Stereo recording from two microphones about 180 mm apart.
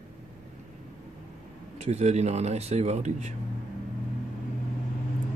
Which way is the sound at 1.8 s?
40° right (ahead or behind).